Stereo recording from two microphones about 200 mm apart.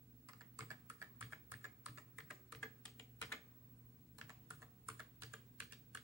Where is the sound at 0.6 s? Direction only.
15° right (ahead or behind).